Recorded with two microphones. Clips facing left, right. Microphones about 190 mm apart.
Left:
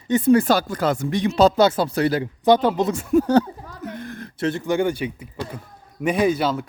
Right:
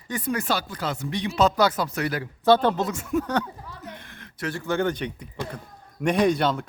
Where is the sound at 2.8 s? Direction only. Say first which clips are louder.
Left 7 dB; 35° left (ahead or behind).